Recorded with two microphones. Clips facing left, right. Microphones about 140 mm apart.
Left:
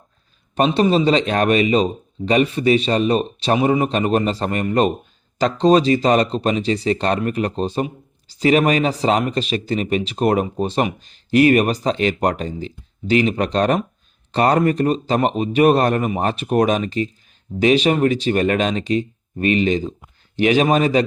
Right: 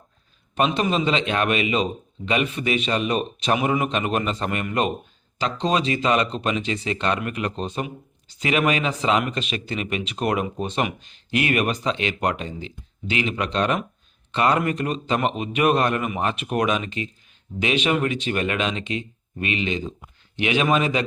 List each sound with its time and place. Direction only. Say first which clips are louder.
0.5 s speech: left 6 dB; 35° left (ahead or behind)